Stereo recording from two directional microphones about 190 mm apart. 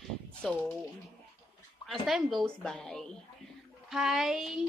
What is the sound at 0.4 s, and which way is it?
Speech, 10° left (ahead or behind).